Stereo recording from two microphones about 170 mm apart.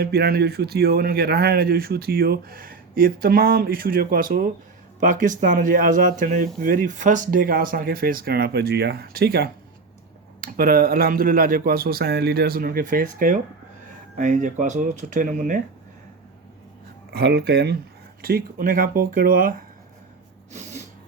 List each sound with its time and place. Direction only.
0.0 s speech: 70° right (ahead or behind); by 15.6 s 50° right (ahead or behind)
17.1 s speech: 75° right (ahead or behind)
18.2 s speech: 60° right (ahead or behind)
20.5 s speech: 45° right (ahead or behind)